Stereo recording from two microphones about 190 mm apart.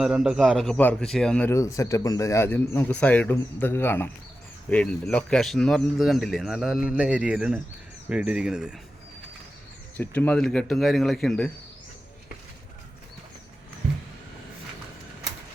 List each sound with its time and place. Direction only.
0.0 s a man's voice: 5° right (ahead or behind)
10.0 s speech: 10° left (ahead or behind)
13.8 s a sound: 60° right (ahead or behind)